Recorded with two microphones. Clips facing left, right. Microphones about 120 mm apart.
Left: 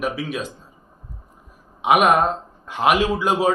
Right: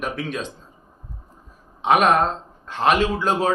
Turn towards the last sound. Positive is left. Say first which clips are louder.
# left 2 dB
turn(degrees=10)  # may be behind; listen again after turning